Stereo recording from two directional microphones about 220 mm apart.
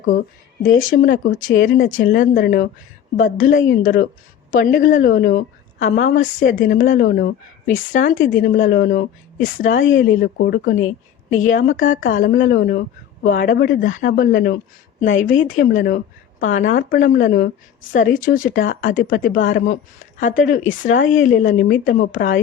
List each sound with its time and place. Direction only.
0.1 s a woman's voice: 40° left (ahead or behind)
11.3 s a woman's voice: 35° left (ahead or behind)